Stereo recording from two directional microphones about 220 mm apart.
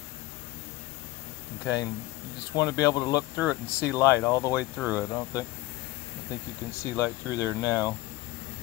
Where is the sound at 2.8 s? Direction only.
15° left (ahead or behind).